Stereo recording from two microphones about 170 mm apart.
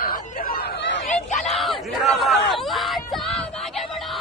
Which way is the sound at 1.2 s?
45° left (ahead or behind).